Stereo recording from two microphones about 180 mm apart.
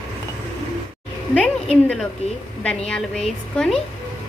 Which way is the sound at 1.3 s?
5° left (ahead or behind).